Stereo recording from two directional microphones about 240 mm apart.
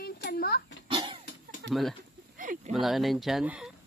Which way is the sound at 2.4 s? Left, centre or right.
Right.